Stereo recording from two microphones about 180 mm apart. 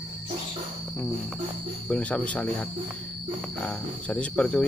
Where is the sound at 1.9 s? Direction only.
5° left (ahead or behind).